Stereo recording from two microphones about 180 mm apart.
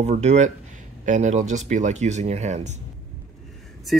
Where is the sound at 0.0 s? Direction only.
40° right (ahead or behind).